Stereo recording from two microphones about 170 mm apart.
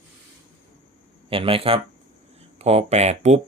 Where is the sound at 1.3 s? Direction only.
30° right (ahead or behind).